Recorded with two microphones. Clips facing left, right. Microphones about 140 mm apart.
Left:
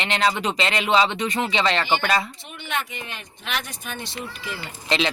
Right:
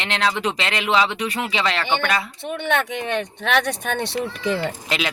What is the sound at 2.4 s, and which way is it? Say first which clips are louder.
Speech: right 8 dB; 65° right (ahead or behind).